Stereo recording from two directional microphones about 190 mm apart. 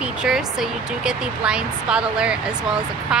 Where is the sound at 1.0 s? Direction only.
5° right (ahead or behind).